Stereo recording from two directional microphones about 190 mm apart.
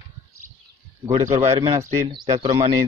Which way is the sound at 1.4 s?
30° right (ahead or behind).